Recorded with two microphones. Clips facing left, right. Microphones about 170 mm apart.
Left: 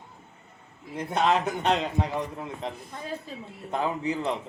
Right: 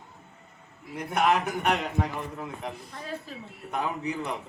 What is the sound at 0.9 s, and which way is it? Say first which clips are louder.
A man's voice: even; 25° left (ahead or behind).